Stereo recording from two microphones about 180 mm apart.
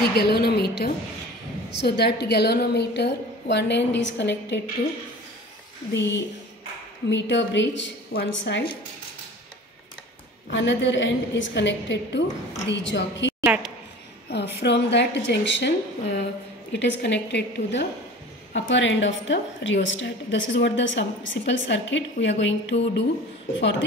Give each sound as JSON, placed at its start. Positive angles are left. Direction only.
{"t": 0.1, "sound": "a woman's voice", "side_deg": 65}
{"t": 5.9, "sound": "a woman's voice", "side_deg": 80}
{"t": 8.1, "sound": "a woman's voice", "side_deg": 65}
{"t": 10.5, "sound": "a woman's voice", "side_deg": 90}
{"t": 13.4, "sound": "a sound", "side_deg": -5}
{"t": 14.6, "sound": "a woman's voice", "side_deg": 75}
{"t": 18.5, "sound": "a woman's voice", "side_deg": 90}